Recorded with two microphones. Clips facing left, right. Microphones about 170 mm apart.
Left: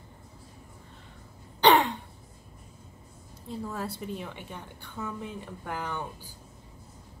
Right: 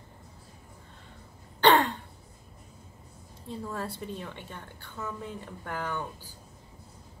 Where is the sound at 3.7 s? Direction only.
10° left (ahead or behind).